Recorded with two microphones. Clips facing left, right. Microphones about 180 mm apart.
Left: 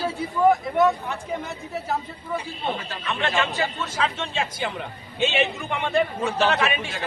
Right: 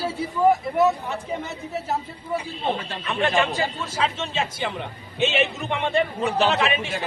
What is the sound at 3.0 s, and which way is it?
Speech, 15° right (ahead or behind).